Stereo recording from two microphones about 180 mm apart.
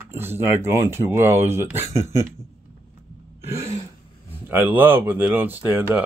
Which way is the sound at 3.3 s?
15° right (ahead or behind).